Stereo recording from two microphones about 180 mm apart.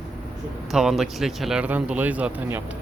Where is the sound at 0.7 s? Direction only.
Centre (ahead or behind).